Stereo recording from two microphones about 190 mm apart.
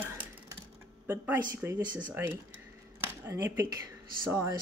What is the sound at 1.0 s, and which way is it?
Speech, 10° right (ahead or behind).